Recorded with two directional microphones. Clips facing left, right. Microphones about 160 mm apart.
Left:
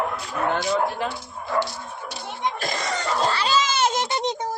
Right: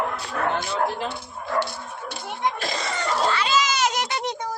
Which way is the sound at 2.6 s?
50° left (ahead or behind).